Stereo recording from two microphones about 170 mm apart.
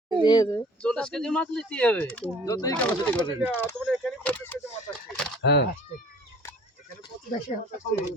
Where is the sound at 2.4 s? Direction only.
20° left (ahead or behind).